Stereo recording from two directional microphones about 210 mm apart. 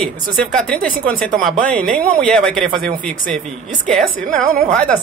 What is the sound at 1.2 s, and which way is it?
Speech, centre (ahead or behind).